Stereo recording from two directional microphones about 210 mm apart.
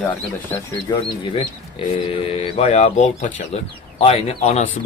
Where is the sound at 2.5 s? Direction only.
30° left (ahead or behind).